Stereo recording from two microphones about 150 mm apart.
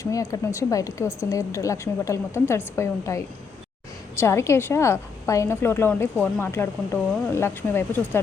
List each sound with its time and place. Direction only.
0.0 s a woman's voice: 20° left (ahead or behind)